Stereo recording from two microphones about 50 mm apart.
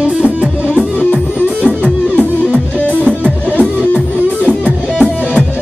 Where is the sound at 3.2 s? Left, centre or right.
Left.